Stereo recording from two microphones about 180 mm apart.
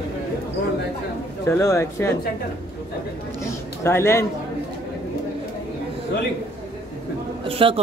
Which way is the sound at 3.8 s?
15° left (ahead or behind).